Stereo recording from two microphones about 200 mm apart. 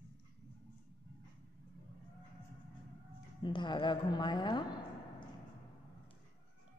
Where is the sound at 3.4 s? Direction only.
25° left (ahead or behind).